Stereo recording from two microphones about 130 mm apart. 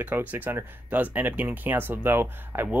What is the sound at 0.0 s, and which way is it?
Speech, 15° right (ahead or behind).